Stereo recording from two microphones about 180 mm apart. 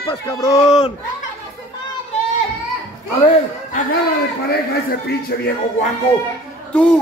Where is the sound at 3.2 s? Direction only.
45° left (ahead or behind).